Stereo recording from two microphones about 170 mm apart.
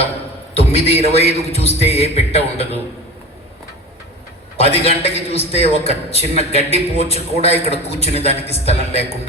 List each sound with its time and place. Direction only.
0.5 s a man's voice: 35° left (ahead or behind)
4.5 s a man's voice: 35° left (ahead or behind)